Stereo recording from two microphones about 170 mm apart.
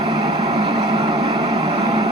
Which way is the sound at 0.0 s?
25° right (ahead or behind).